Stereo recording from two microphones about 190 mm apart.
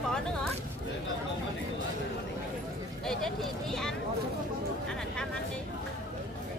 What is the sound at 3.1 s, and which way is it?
Speech, centre (ahead or behind).